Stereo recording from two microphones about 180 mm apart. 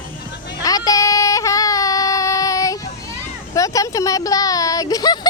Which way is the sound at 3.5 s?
20° left (ahead or behind).